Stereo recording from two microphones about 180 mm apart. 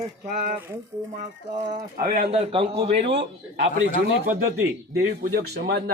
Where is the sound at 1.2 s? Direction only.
45° right (ahead or behind).